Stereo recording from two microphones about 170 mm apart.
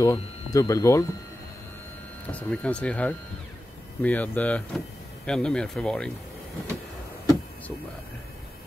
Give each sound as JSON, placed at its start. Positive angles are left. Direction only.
{"t": 0.0, "sound": "speech", "side_deg": 20}
{"t": 2.2, "sound": "speech", "side_deg": 10}